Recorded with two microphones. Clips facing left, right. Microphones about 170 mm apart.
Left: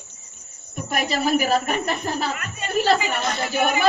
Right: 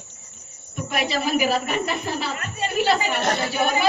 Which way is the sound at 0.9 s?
45° left (ahead or behind).